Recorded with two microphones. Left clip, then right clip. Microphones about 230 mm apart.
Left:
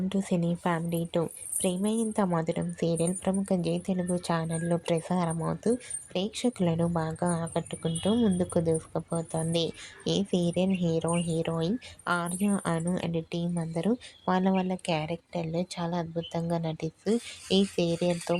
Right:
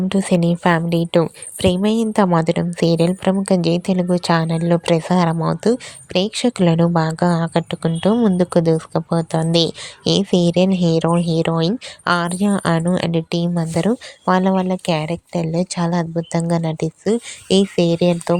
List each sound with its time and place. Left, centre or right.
0.1 s a woman's voice: right